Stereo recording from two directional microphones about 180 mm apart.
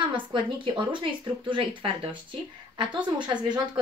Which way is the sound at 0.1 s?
25° right (ahead or behind).